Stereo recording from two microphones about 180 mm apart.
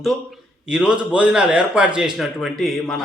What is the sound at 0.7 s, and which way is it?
A man's voice, 5° right (ahead or behind).